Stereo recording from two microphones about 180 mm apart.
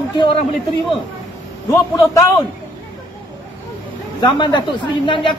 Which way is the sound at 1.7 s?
15° left (ahead or behind).